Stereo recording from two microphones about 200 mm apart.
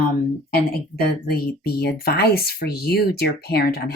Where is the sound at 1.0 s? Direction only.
50° left (ahead or behind).